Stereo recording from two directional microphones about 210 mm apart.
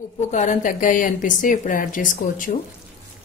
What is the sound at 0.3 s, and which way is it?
A woman's voice, 35° left (ahead or behind).